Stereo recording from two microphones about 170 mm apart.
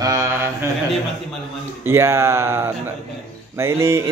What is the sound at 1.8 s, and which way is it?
A man's voice, 15° right (ahead or behind).